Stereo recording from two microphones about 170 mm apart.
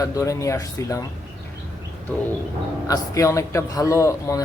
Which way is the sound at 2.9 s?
20° left (ahead or behind).